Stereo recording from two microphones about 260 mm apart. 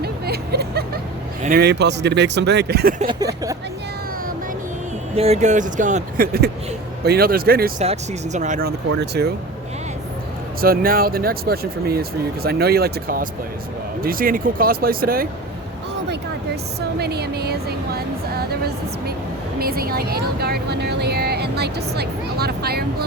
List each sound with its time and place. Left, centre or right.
0.0 s vehicle: right
1.5 s speech: right
3.1 s speech: centre
5.1 s speech: right
10.6 s speech: right
17.0 s speech: right